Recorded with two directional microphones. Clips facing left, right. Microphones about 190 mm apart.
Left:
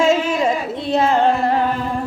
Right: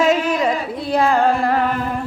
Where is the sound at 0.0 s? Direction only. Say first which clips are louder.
Even; 25° left (ahead or behind).